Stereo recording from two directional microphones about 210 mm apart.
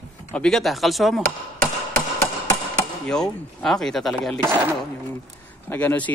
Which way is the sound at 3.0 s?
5° left (ahead or behind).